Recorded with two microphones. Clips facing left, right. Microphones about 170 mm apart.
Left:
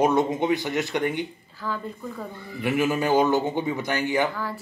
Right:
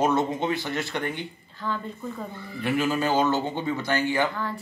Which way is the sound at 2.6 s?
15° left (ahead or behind).